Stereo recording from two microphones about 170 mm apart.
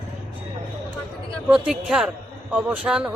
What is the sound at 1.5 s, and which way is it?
Speech, 5° right (ahead or behind).